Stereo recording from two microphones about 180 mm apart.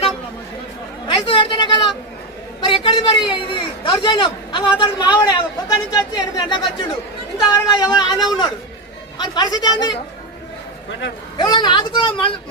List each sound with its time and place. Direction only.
1.0 s a man's voice: 30° left (ahead or behind)
11.3 s a man's voice: 25° left (ahead or behind)